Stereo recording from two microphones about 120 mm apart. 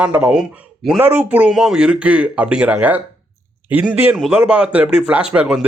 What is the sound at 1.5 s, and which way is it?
Speech, 5° right (ahead or behind).